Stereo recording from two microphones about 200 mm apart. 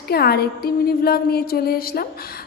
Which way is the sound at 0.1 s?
50° left (ahead or behind).